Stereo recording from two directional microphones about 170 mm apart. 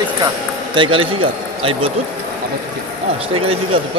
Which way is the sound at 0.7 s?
30° right (ahead or behind).